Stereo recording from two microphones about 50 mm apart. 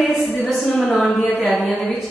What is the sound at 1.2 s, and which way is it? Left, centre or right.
Mantra, left.